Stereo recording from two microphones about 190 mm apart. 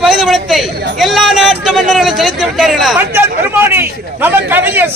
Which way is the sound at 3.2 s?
10° right (ahead or behind).